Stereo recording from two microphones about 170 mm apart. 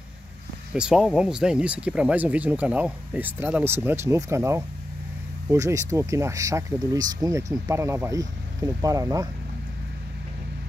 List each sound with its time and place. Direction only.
0.7 s speech: 5° right (ahead or behind); by 9.3 s 20° right (ahead or behind)